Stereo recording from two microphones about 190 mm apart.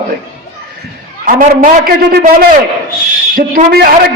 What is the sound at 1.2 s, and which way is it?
A man's voice, 45° right (ahead or behind).